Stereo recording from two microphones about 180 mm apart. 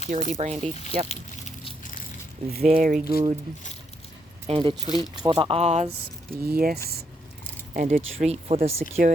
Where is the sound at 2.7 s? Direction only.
50° right (ahead or behind).